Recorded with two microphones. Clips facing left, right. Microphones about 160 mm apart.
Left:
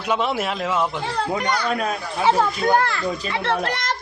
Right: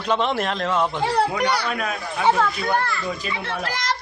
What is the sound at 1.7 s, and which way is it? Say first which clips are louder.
Speech: left 3 dB; 35° left (ahead or behind).